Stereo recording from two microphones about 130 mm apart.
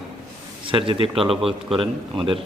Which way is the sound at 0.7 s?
40° right (ahead or behind).